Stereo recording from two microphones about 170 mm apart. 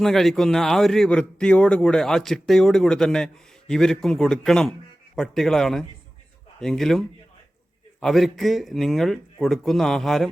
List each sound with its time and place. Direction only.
0.0 s a man's voice: centre (ahead or behind)
8.0 s a man's voice: centre (ahead or behind)